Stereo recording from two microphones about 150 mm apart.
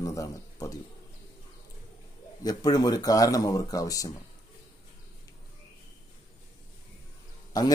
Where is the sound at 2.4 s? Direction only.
25° left (ahead or behind).